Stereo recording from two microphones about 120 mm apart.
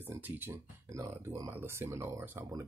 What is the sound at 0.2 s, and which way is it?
Speech, 15° right (ahead or behind).